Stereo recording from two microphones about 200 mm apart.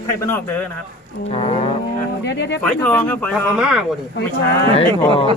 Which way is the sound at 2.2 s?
60° left (ahead or behind).